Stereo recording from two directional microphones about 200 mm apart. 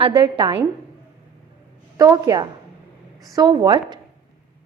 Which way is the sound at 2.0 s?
20° right (ahead or behind).